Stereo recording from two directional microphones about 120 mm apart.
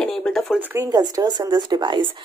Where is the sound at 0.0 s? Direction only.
5° left (ahead or behind).